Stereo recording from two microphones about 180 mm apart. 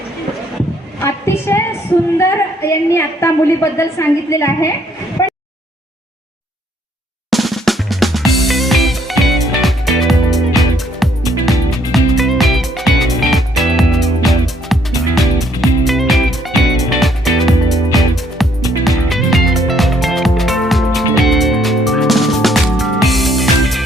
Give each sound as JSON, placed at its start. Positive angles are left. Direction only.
{"t": 1.0, "sound": "a woman's voice", "side_deg": 15}
{"t": 5.2, "sound": "a sound", "side_deg": 20}
{"t": 7.3, "sound": "drum", "side_deg": 0}
{"t": 11.4, "sound": "music", "side_deg": 0}